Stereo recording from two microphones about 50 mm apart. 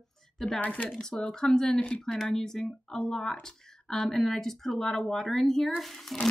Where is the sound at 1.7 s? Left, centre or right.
Left.